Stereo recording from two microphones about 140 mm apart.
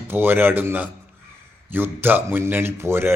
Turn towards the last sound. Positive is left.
turn(degrees=-15)  # may be behind; listen again after turning